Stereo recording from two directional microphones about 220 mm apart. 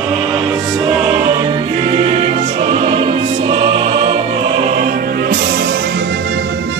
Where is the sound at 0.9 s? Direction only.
5° right (ahead or behind).